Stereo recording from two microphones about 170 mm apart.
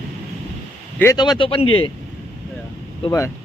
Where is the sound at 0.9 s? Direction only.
20° left (ahead or behind).